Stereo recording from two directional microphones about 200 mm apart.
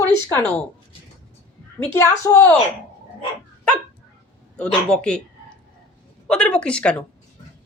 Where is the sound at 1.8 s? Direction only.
15° left (ahead or behind).